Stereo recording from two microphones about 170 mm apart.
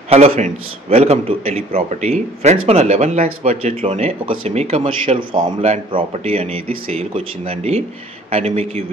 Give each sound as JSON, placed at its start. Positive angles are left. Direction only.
{"t": 0.1, "sound": "a man's voice", "side_deg": -35}